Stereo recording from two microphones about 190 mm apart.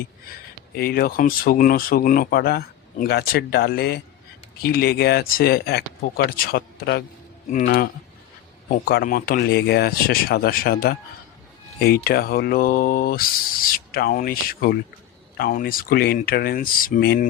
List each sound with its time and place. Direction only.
0.8 s speech: 55° left (ahead or behind)
8.7 s speech: 55° left (ahead or behind)